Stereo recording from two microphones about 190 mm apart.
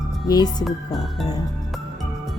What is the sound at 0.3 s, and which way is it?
Speech, 20° left (ahead or behind).